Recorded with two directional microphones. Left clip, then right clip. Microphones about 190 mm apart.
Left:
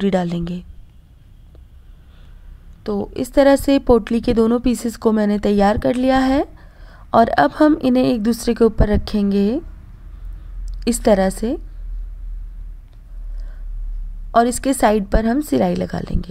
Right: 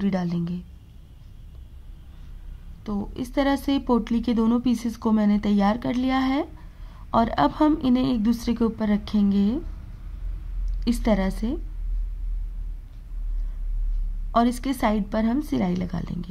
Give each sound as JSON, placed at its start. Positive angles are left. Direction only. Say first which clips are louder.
{"t": 0.0, "sound": "speech", "louder": "left 9 dB", "side_deg": 35}
{"t": 2.8, "sound": "speech", "louder": "left 9 dB", "side_deg": 35}
{"t": 10.8, "sound": "speech", "louder": "left 9 dB", "side_deg": 35}
{"t": 14.3, "sound": "speech", "louder": "left 7 dB", "side_deg": 35}